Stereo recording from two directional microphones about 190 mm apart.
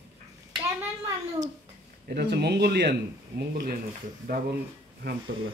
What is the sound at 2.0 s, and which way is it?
Speech, 55° right (ahead or behind).